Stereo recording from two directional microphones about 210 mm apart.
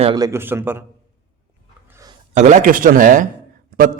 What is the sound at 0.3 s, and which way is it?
Speech, 10° right (ahead or behind).